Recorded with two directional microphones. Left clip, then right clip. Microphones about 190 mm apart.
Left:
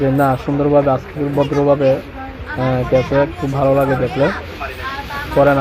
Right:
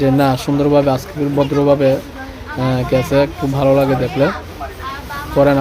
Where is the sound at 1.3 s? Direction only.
Centre (ahead or behind).